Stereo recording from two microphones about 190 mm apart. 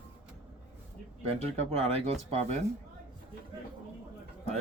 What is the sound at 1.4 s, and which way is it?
Speech, 35° right (ahead or behind).